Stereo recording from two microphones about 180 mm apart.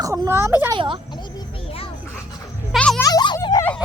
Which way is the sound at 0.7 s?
30° right (ahead or behind).